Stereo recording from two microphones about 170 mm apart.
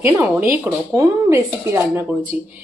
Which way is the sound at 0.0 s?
15° right (ahead or behind).